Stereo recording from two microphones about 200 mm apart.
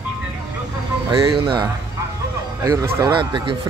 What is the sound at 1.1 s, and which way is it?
Speech, 25° right (ahead or behind).